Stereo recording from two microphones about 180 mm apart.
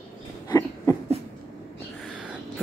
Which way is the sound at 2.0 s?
5° right (ahead or behind).